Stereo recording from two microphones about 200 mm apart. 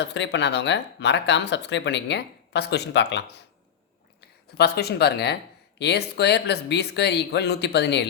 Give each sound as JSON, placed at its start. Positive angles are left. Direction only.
{"t": 0.0, "sound": "speech", "side_deg": 60}
{"t": 4.5, "sound": "speech", "side_deg": 55}